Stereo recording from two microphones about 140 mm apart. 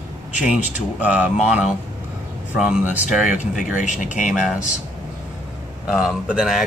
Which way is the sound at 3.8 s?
65° left (ahead or behind).